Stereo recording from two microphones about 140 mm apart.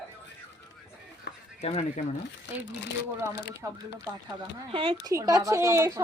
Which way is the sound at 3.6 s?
25° right (ahead or behind).